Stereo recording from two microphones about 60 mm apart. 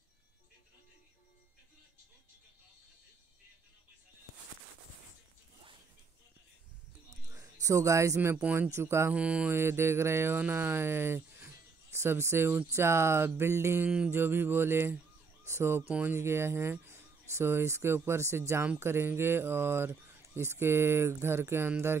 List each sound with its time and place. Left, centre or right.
7.3 s a sound: right
8.6 s speech: right
9.1 s mantra: right
9.5 s speech: right
13.8 s mantra: right
14.1 s music: right
15.4 s speech: right